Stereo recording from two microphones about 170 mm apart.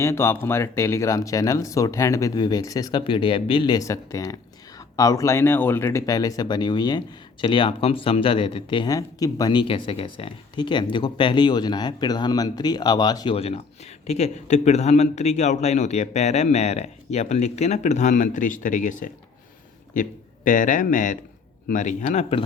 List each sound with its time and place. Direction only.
0.0 s a man's voice: 15° left (ahead or behind); by 22.4 s 35° left (ahead or behind)